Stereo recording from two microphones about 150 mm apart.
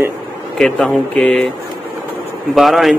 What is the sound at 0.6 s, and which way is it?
Speech, 5° left (ahead or behind).